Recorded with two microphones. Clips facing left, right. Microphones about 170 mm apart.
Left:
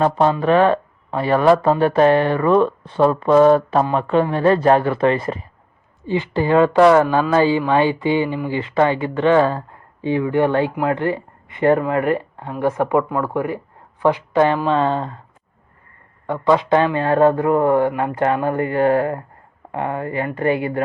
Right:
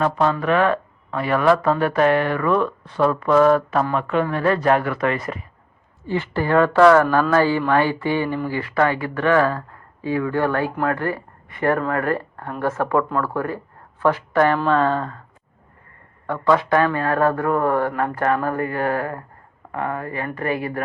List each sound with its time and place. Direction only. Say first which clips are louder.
0.0 s speech: left 3 dB; 30° left (ahead or behind)
6.1 s speech: left 3 dB; 15° left (ahead or behind)
16.2 s speech: left 2 dB; 20° left (ahead or behind)